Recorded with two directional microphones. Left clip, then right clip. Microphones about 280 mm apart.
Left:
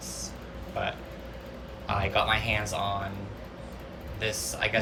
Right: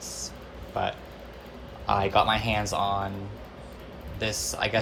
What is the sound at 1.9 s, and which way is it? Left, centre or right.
A man's voice, centre.